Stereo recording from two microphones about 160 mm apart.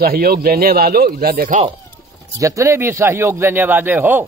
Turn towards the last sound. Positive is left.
turn(degrees=-10)  # may be behind; listen again after turning